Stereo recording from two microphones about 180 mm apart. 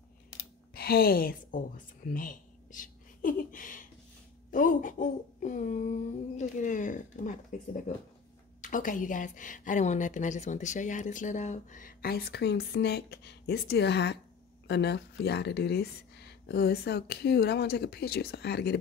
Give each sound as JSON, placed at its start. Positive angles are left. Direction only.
{"t": 0.7, "sound": "a woman's voice", "side_deg": 60}
{"t": 2.0, "sound": "a sound", "side_deg": 50}
{"t": 4.5, "sound": "a woman's voice", "side_deg": 50}